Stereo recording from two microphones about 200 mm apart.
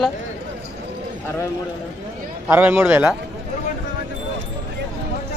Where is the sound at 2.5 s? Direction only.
10° right (ahead or behind).